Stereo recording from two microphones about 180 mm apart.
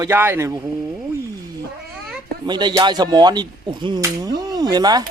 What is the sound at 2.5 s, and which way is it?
Speech, 25° right (ahead or behind).